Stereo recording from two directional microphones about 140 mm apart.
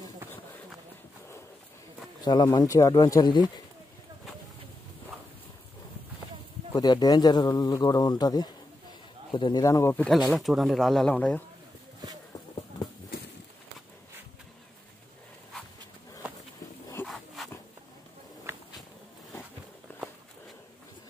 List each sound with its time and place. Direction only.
2.2 s speech: 30° left (ahead or behind)
6.7 s speech: 30° left (ahead or behind)
10.0 s speech: centre (ahead or behind)
17.0 s dog: centre (ahead or behind)